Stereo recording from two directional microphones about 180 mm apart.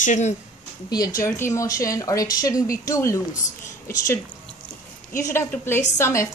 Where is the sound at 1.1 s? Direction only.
15° left (ahead or behind).